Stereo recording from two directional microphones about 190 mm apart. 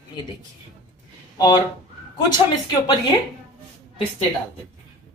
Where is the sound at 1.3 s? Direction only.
20° left (ahead or behind).